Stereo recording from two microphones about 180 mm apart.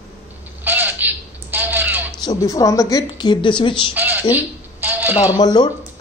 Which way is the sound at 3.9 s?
10° right (ahead or behind).